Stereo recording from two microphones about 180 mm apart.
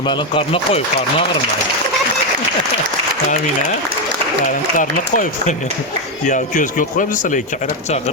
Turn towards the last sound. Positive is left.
turn(degrees=45)  # may be behind; listen again after turning